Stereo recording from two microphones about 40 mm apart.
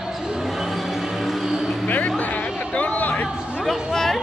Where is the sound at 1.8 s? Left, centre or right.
Left.